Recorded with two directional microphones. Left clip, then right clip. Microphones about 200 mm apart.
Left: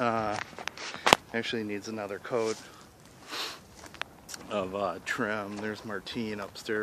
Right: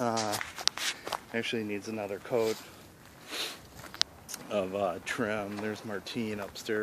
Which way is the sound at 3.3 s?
5° right (ahead or behind).